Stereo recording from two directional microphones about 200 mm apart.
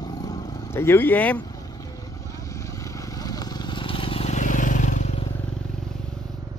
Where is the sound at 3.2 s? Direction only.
20° left (ahead or behind); by 5.1 s 40° left (ahead or behind).